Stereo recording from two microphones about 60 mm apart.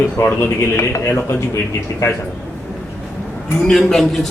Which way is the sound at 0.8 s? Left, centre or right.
Left.